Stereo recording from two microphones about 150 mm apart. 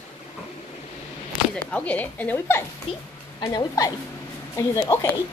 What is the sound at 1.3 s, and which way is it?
Speech, 10° left (ahead or behind).